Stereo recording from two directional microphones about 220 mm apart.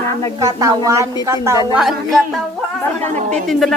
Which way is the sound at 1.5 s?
20° left (ahead or behind).